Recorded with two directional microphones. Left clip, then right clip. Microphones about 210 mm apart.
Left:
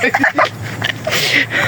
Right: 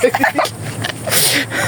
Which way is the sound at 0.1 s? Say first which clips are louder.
Left 1 dB; 25° right (ahead or behind).